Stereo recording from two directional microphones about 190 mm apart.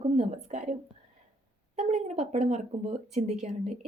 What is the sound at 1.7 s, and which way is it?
A woman's voice, 35° right (ahead or behind).